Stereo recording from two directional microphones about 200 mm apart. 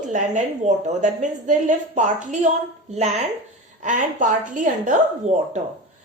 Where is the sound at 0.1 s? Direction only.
35° right (ahead or behind).